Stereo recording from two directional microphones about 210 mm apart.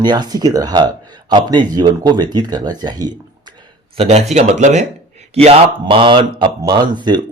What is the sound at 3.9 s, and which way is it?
Speech, 30° right (ahead or behind).